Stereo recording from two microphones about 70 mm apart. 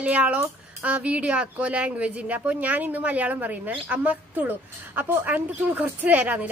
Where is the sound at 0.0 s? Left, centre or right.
Centre.